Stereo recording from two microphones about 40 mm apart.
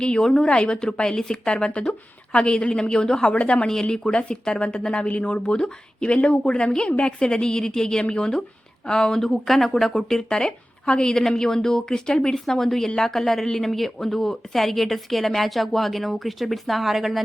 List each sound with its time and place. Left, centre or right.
0.0 s a woman's voice: centre
3.3 s speech: left
3.7 s a woman's voice: centre